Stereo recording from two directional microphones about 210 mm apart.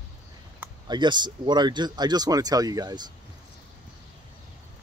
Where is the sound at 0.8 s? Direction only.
20° right (ahead or behind).